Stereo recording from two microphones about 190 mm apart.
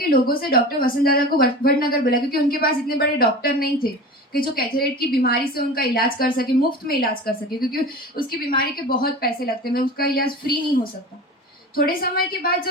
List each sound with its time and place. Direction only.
0.0 s a woman's voice: 50° left (ahead or behind)
11.7 s a woman's voice: 50° left (ahead or behind)